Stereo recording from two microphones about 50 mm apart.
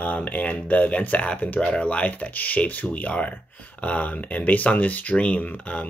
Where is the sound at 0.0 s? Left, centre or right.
Left.